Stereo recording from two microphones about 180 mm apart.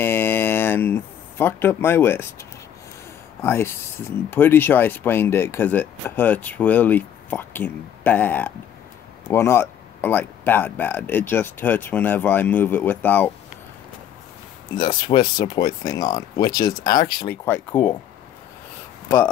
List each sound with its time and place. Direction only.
0.0 s a sound: 15° left (ahead or behind)
3.4 s speech: 15° left (ahead or behind)
14.8 s speech: 25° left (ahead or behind)
17.5 s speech: 10° left (ahead or behind)